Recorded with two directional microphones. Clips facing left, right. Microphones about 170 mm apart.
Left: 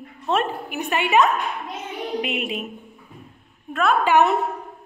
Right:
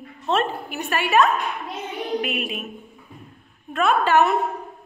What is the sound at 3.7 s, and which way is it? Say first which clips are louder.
Speech: even; centre (ahead or behind).